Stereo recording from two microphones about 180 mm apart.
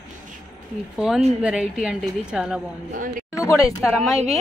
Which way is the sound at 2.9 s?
45° right (ahead or behind).